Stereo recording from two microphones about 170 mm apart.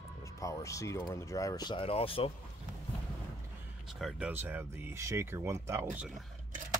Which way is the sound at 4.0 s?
10° right (ahead or behind).